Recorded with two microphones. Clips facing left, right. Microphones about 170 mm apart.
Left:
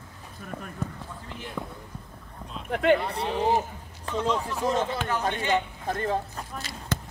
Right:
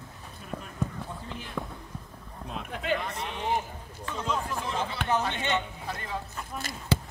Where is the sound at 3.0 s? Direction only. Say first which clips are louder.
Left 7 dB; 35° left (ahead or behind).